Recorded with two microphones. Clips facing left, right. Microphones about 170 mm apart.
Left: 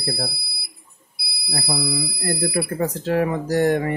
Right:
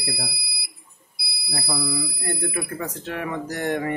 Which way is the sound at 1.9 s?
35° left (ahead or behind).